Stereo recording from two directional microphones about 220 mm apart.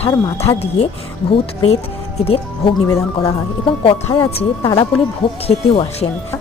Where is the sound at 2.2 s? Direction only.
25° left (ahead or behind).